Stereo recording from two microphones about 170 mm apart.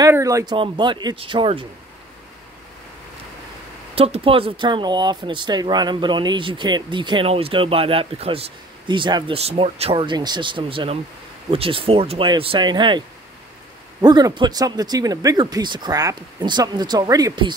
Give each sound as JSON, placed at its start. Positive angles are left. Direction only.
{"t": 0.0, "sound": "speech", "side_deg": -20}
{"t": 3.9, "sound": "speech", "side_deg": -35}
{"t": 14.0, "sound": "speech", "side_deg": -25}